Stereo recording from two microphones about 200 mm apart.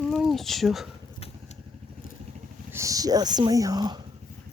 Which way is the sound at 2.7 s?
15° right (ahead or behind).